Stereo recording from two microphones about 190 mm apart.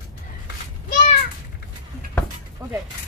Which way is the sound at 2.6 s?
20° right (ahead or behind).